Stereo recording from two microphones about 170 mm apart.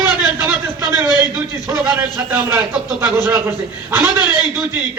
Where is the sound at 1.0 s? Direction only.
25° left (ahead or behind).